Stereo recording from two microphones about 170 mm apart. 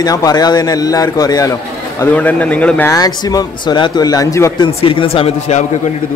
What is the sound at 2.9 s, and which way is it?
A man's voice, 20° left (ahead or behind).